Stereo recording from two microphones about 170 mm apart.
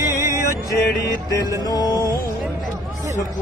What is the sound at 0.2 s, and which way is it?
Music, 20° right (ahead or behind).